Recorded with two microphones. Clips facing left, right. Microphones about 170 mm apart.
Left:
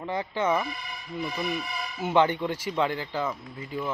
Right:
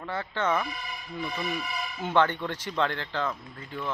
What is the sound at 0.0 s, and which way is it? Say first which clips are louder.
Speech: left 2 dB; 15° left (ahead or behind).